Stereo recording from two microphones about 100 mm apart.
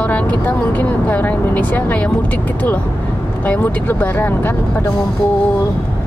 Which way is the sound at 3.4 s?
20° left (ahead or behind).